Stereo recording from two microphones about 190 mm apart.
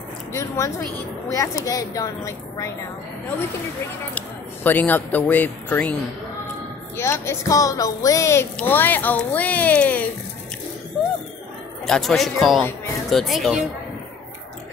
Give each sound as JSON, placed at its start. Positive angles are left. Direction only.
{"t": 0.3, "sound": "speech", "side_deg": 15}
{"t": 4.6, "sound": "speech", "side_deg": 10}
{"t": 7.0, "sound": "speech", "side_deg": 15}
{"t": 11.8, "sound": "speech", "side_deg": 0}